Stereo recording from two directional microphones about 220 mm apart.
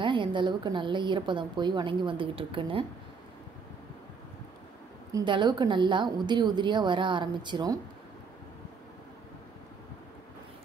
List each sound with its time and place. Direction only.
0.0 s a woman's voice: 20° right (ahead or behind)
5.1 s a woman's voice: 20° right (ahead or behind)